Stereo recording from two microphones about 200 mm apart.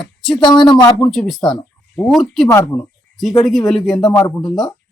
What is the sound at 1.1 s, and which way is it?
Speech, centre (ahead or behind).